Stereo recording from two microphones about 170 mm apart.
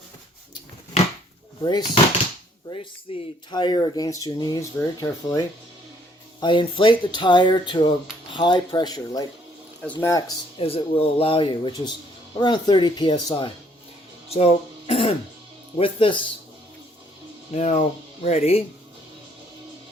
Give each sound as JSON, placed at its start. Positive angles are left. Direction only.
{"t": 1.6, "sound": "speech", "side_deg": 25}
{"t": 10.6, "sound": "speech", "side_deg": 35}
{"t": 14.3, "sound": "music", "side_deg": 35}
{"t": 15.8, "sound": "speech", "side_deg": 30}
{"t": 17.5, "sound": "speech", "side_deg": 45}